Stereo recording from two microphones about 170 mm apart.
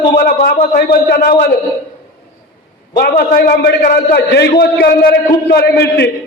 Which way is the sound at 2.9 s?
65° left (ahead or behind).